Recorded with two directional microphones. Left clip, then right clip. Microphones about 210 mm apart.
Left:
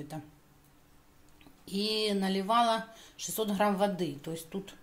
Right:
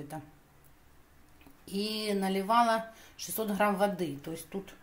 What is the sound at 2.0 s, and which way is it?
A woman's voice, centre (ahead or behind).